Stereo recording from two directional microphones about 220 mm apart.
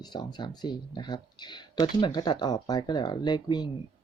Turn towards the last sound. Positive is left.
turn(degrees=20)  # may be behind; listen again after turning